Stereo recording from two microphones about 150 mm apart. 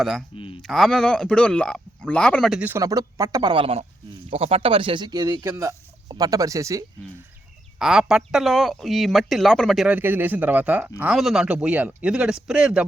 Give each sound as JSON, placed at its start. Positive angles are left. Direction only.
{"t": 0.0, "sound": "speech", "side_deg": 0}
{"t": 0.3, "sound": "speech", "side_deg": 35}
{"t": 0.6, "sound": "speech", "side_deg": 0}
{"t": 2.6, "sound": "speech", "side_deg": -20}
{"t": 3.5, "sound": "speech", "side_deg": -35}
{"t": 7.8, "sound": "speech", "side_deg": -5}